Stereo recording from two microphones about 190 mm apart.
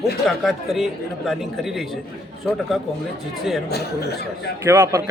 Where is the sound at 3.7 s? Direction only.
60° left (ahead or behind).